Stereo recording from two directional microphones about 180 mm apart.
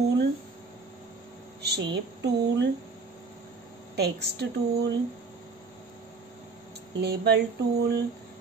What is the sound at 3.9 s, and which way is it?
Speech, 65° right (ahead or behind).